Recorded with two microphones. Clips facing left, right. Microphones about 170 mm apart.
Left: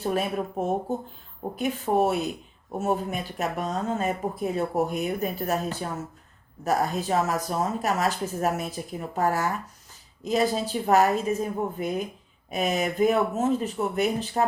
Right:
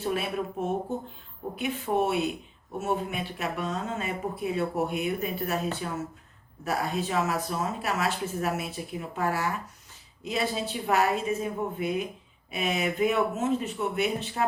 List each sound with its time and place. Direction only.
0.0 s speech: 40° left (ahead or behind)
1.5 s speech: 40° left (ahead or behind)